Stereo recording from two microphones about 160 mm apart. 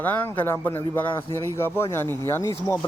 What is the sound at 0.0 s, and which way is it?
Speech, 10° left (ahead or behind).